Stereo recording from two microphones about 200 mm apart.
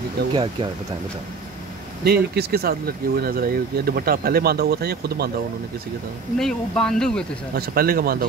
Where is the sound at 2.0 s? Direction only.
50° right (ahead or behind).